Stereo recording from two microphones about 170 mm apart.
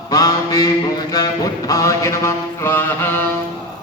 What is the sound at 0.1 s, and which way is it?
Mantra, 20° left (ahead or behind).